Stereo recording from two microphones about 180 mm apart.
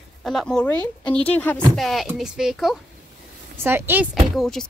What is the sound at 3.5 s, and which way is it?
Speech, 15° right (ahead or behind).